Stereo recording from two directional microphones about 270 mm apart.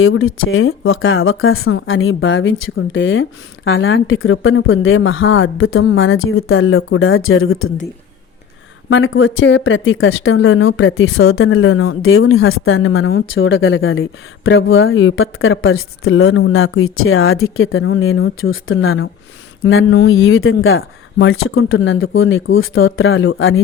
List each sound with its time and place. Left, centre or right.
0.0 s a woman's voice: left
8.9 s a woman's voice: left